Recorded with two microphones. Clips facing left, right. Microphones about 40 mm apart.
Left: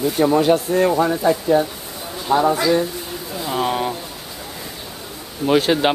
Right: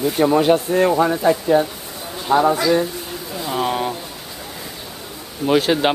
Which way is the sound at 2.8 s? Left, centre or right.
Centre.